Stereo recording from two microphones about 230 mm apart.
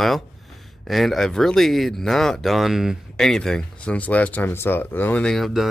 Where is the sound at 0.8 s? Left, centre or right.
Centre.